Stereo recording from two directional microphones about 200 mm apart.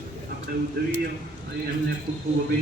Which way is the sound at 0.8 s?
50° right (ahead or behind).